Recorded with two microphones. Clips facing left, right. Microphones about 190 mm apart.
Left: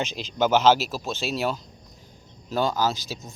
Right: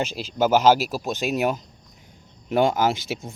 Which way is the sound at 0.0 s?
10° right (ahead or behind).